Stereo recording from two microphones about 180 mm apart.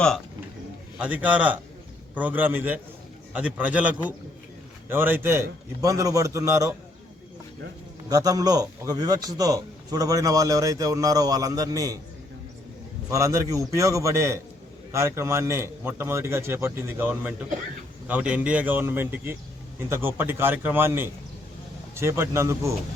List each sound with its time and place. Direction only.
0.9 s a man's voice: 10° right (ahead or behind)
8.1 s a man's voice: 20° right (ahead or behind)
13.1 s a man's voice: 15° right (ahead or behind)